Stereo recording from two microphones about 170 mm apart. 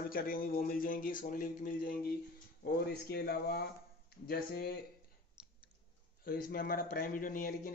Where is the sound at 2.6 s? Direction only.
70° left (ahead or behind).